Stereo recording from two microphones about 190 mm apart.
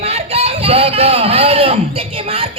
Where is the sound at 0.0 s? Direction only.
35° right (ahead or behind).